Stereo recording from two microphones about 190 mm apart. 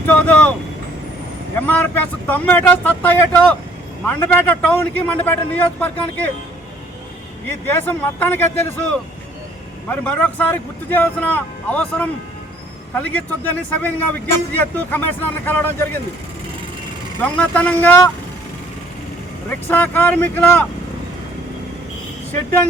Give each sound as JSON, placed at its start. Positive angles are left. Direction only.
{"t": 0.1, "sound": "vehicle", "side_deg": 10}
{"t": 1.6, "sound": "speech", "side_deg": 10}
{"t": 7.4, "sound": "speech", "side_deg": 10}
{"t": 17.2, "sound": "speech", "side_deg": 5}
{"t": 19.5, "sound": "speech", "side_deg": 10}